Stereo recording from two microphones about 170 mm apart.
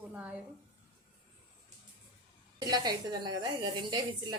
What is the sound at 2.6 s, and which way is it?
A woman's voice, 25° right (ahead or behind).